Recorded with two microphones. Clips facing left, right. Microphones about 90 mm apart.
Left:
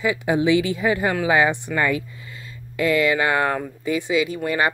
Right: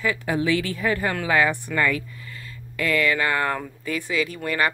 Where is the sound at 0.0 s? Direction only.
15° left (ahead or behind).